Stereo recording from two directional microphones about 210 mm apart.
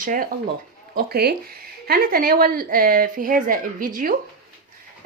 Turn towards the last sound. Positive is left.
turn(degrees=-40)  # may be behind; listen again after turning